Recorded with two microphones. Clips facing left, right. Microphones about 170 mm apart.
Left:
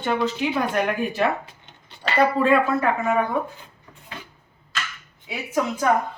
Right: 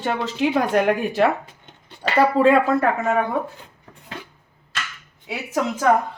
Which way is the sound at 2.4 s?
80° right.